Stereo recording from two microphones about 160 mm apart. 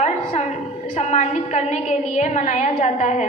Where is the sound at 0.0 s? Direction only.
45° left (ahead or behind).